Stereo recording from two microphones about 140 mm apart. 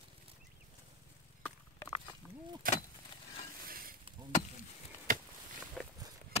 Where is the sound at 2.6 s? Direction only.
90° right.